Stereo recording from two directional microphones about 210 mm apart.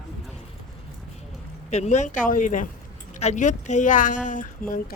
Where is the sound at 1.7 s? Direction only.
35° left (ahead or behind).